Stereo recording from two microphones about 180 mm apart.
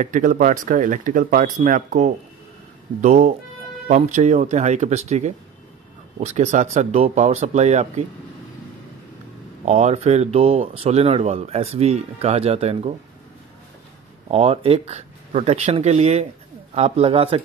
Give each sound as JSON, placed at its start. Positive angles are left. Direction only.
{"t": 0.0, "sound": "speech", "side_deg": -45}
{"t": 9.7, "sound": "speech", "side_deg": -40}
{"t": 14.3, "sound": "speech", "side_deg": -35}